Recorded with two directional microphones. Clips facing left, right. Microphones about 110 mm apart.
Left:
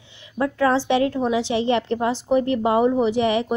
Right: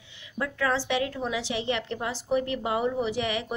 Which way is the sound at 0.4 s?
35° left (ahead or behind).